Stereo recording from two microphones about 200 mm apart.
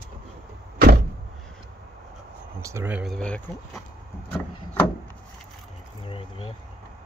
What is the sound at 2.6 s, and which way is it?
Speech, 10° right (ahead or behind).